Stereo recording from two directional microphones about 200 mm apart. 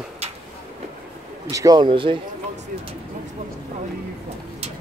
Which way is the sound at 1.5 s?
15° right (ahead or behind).